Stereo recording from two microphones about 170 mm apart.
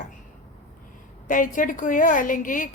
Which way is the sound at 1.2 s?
50° left (ahead or behind).